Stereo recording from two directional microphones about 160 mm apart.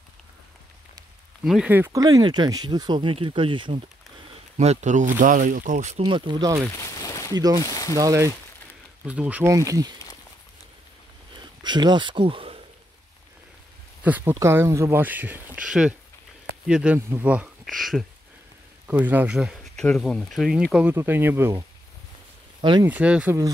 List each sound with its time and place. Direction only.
1.4 s speech: 5° right (ahead or behind); by 3.8 s 30° right (ahead or behind)
4.6 s speech: 45° right (ahead or behind)
6.0 s speech: 30° right (ahead or behind)
6.7 s a sound: 20° left (ahead or behind)
7.3 s speech: 25° right (ahead or behind)
7.6 s speech: 20° left (ahead or behind)
7.9 s speech: 20° right (ahead or behind)
9.0 s speech: 10° right (ahead or behind)
11.3 s speech: 30° right (ahead or behind)
14.0 s speech: 10° right (ahead or behind)
18.9 s speech: 10° right (ahead or behind)
22.6 s speech: 25° right (ahead or behind)
22.8 s speech: 10° right (ahead or behind)